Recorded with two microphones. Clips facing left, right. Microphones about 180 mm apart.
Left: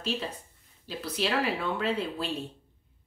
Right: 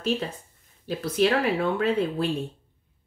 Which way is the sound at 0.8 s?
50° right (ahead or behind).